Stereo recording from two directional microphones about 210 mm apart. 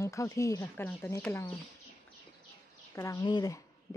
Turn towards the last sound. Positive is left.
turn(degrees=20)  # may be behind; listen again after turning